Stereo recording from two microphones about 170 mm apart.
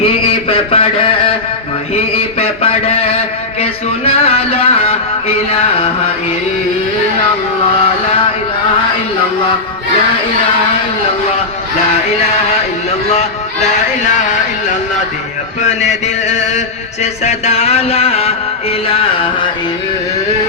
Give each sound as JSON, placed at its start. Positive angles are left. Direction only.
{"t": 0.0, "sound": "a sound", "side_deg": 35}
{"t": 13.1, "sound": "speech", "side_deg": 40}
{"t": 15.6, "sound": "chant", "side_deg": 45}
{"t": 18.9, "sound": "music", "side_deg": 30}